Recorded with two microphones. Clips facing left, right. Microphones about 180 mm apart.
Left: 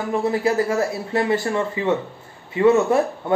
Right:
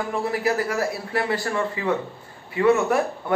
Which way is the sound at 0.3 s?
25° left (ahead or behind).